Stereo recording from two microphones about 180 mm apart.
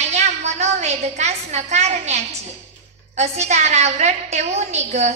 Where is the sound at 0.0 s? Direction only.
40° right (ahead or behind).